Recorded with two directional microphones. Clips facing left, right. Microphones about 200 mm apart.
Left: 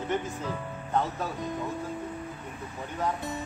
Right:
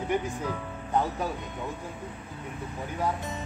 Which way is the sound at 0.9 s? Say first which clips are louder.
Right 1 dB; 15° right (ahead or behind).